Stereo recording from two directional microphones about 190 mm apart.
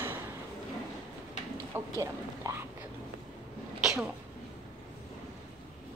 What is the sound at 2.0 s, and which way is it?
Speech, 15° right (ahead or behind).